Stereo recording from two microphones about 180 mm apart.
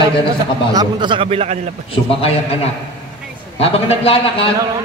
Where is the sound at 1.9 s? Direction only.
30° left (ahead or behind).